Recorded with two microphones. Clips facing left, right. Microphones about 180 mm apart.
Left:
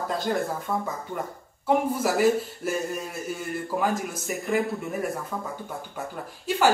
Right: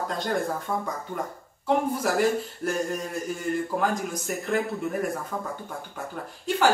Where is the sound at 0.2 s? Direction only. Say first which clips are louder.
Even; 5° left (ahead or behind).